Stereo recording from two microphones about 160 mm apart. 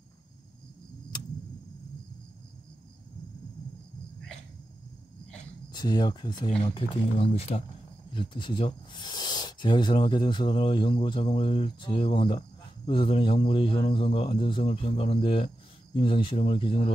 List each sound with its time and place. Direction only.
5.7 s speech: 25° left (ahead or behind)
8.1 s speech: 30° left (ahead or behind)